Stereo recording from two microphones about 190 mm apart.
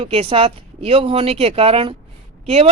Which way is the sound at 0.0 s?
30° right (ahead or behind).